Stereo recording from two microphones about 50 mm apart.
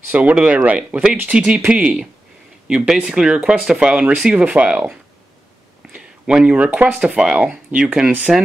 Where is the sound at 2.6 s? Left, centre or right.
Centre.